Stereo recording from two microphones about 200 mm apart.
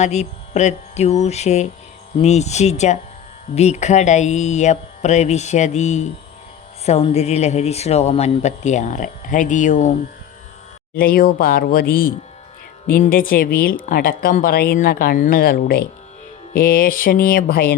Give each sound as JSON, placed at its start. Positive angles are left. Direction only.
{"t": 0.0, "sound": "speech", "side_deg": 35}
{"t": 10.9, "sound": "a woman's voice", "side_deg": 45}